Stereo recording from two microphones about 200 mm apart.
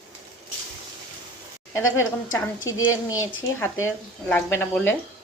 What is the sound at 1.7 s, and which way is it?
A woman's voice, 15° left (ahead or behind).